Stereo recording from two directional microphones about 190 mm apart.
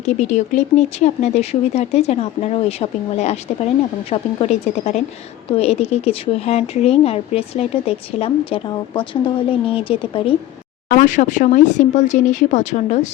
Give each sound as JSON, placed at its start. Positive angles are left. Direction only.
{"t": 0.0, "sound": "speech", "side_deg": 35}
{"t": 10.8, "sound": "speech", "side_deg": 40}